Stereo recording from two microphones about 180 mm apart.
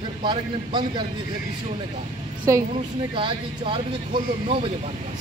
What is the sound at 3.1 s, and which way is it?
Speech, 30° right (ahead or behind).